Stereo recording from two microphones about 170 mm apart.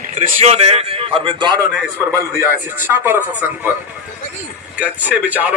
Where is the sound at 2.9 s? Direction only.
10° right (ahead or behind).